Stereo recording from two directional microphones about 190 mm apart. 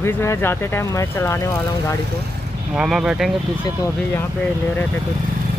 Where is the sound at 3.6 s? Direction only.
15° left (ahead or behind).